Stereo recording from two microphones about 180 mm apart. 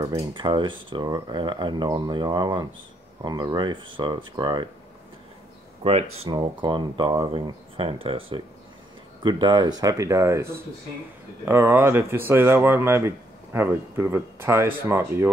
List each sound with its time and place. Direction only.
0.0 s speech: 25° right (ahead or behind)
5.9 s speech: 35° right (ahead or behind); by 15.3 s 15° right (ahead or behind)